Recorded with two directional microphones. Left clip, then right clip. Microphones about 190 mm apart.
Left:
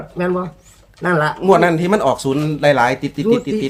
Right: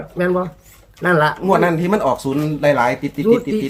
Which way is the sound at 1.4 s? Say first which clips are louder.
Left 3 dB; 40° left (ahead or behind).